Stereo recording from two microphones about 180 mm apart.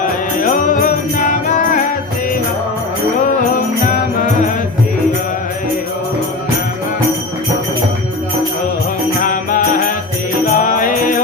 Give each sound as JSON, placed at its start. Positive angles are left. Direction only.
{"t": 0.4, "sound": "music", "side_deg": 50}
{"t": 9.2, "sound": "music", "side_deg": 50}